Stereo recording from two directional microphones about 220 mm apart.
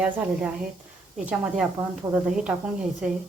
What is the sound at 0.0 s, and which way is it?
A woman's voice, 5° right (ahead or behind).